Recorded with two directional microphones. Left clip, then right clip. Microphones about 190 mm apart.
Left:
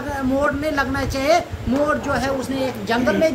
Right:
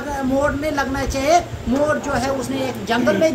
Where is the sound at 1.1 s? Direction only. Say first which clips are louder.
Right 2 dB; 20° left (ahead or behind).